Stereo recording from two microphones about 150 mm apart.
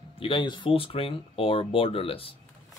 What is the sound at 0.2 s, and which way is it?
Speech, 35° left (ahead or behind).